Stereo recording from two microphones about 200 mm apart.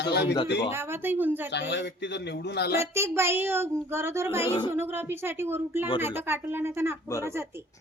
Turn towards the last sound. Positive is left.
turn(degrees=-10)  # may be behind; listen again after turning